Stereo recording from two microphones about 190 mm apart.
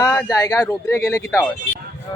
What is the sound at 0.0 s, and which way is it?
Speech, 20° left (ahead or behind).